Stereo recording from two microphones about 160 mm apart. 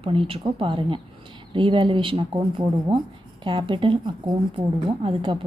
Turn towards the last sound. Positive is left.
turn(degrees=-30)  # may be behind; listen again after turning